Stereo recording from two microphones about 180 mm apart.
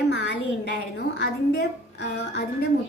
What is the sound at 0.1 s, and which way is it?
A woman's voice, 70° left (ahead or behind).